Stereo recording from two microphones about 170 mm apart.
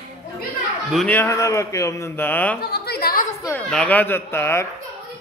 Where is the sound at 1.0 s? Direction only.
15° left (ahead or behind).